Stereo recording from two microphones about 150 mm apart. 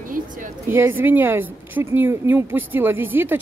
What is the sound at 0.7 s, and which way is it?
Speech, 15° right (ahead or behind).